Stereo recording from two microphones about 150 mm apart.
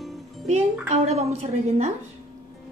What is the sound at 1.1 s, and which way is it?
Speech, 45° right (ahead or behind).